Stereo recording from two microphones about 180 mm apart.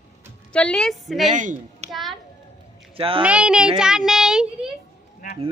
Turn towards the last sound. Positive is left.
turn(degrees=-5)  # may be behind; listen again after turning